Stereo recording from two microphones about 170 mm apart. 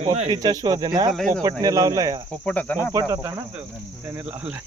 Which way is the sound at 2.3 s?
5° left (ahead or behind).